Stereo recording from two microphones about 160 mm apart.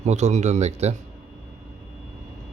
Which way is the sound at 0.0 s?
45° right (ahead or behind).